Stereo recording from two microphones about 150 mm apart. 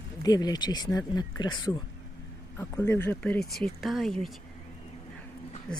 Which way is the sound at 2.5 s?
15° left (ahead or behind).